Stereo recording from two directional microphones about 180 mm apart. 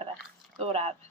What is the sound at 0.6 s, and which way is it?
Speech, 35° right (ahead or behind).